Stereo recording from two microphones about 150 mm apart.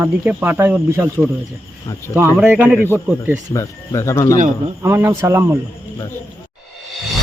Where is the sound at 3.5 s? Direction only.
20° left (ahead or behind).